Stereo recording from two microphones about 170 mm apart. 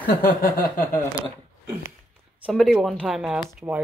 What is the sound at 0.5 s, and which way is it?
Speech, 55° left (ahead or behind).